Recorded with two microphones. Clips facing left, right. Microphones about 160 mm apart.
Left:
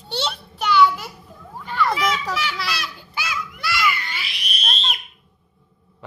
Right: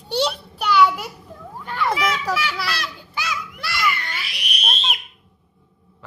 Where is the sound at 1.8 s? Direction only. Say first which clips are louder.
Left 1 dB; 15° right (ahead or behind); by 4.3 s centre (ahead or behind).